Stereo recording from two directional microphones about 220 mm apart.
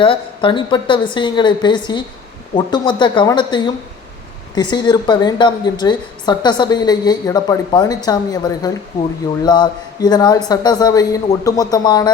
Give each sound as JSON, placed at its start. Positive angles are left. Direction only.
{"t": 0.0, "sound": "a woman's voice", "side_deg": 25}